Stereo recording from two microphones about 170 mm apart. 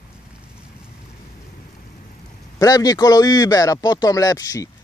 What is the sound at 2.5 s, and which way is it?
A man's voice, 20° left (ahead or behind).